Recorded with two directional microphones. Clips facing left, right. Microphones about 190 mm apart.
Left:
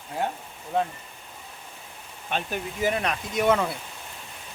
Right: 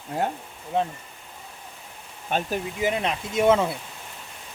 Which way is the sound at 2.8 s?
20° right (ahead or behind).